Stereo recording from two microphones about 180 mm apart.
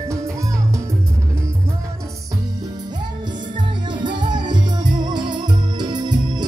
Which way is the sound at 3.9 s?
25° right (ahead or behind).